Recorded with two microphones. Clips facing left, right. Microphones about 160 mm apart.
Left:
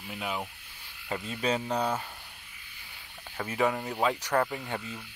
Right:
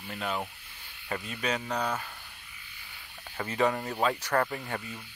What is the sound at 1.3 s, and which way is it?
Speech, 25° left (ahead or behind).